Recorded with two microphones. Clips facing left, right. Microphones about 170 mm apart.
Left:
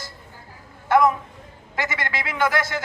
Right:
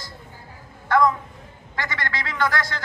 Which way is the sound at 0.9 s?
20° left (ahead or behind).